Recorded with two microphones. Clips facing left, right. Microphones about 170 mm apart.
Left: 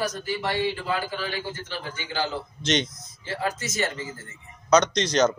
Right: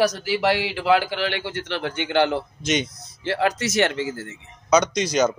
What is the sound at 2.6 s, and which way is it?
Speech, 10° right (ahead or behind).